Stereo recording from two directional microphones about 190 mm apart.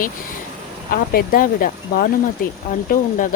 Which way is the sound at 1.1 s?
50° left (ahead or behind).